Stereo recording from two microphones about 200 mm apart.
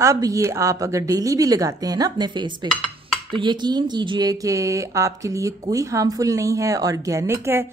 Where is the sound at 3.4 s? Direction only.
20° right (ahead or behind).